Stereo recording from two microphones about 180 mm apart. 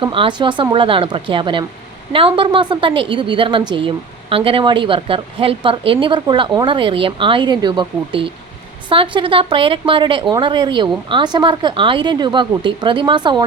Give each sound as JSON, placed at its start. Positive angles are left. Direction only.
{"t": 0.0, "sound": "a woman's voice", "side_deg": -30}